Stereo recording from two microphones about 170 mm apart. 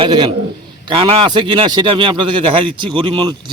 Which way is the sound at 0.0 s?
30° right (ahead or behind).